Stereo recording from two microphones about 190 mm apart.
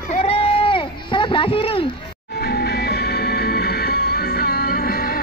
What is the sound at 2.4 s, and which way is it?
Music, 55° left (ahead or behind).